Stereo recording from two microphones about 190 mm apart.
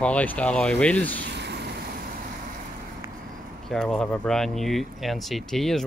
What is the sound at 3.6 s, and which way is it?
Speech, centre (ahead or behind).